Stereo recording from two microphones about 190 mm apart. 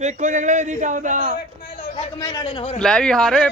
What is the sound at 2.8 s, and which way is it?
Speech, 5° left (ahead or behind).